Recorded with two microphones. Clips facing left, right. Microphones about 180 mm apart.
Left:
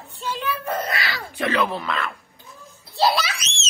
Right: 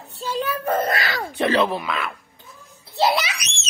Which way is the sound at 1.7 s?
10° right (ahead or behind).